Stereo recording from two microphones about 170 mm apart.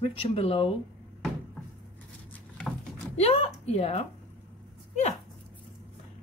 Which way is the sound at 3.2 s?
35° left (ahead or behind).